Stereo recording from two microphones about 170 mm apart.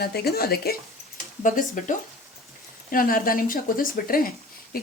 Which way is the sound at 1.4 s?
55° left (ahead or behind).